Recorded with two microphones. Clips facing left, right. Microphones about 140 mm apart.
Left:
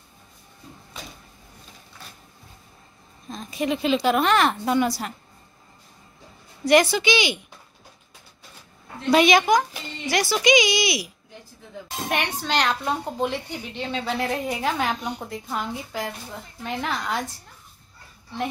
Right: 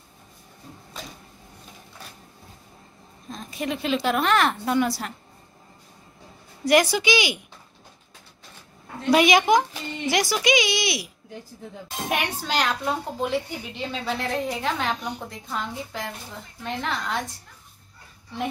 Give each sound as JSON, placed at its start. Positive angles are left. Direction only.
{"t": 3.3, "sound": "a woman's voice", "side_deg": 0}
{"t": 6.6, "sound": "speech", "side_deg": -10}
{"t": 9.1, "sound": "speech", "side_deg": -10}
{"t": 10.4, "sound": "a woman's voice", "side_deg": 0}
{"t": 12.1, "sound": "a woman's voice", "side_deg": -5}